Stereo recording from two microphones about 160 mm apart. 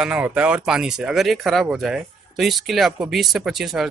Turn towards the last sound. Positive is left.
turn(degrees=0)  # may be behind; listen again after turning